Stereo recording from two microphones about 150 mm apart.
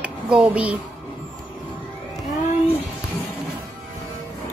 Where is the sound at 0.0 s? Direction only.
10° right (ahead or behind).